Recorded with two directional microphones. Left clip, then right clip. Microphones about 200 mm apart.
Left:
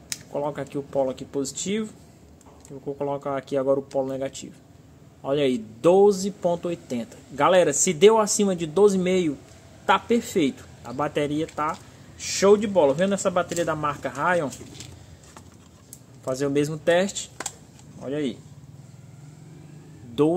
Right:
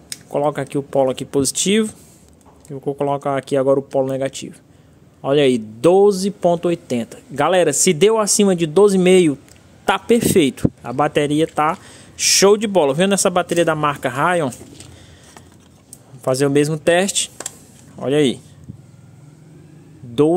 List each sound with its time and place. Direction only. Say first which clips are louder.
0.3 s speech: right 10 dB; 40° right (ahead or behind)
16.3 s speech: right 8 dB; 40° right (ahead or behind)